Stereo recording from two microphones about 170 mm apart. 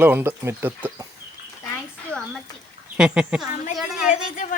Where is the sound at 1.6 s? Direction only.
10° left (ahead or behind).